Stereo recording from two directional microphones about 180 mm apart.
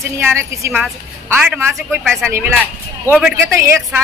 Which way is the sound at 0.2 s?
15° right (ahead or behind).